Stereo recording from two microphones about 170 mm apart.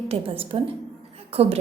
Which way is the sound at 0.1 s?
35° right (ahead or behind).